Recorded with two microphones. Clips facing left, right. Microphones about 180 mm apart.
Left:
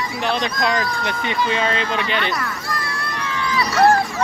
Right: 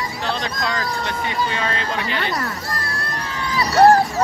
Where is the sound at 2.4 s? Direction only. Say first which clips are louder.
Even; 35° right (ahead or behind).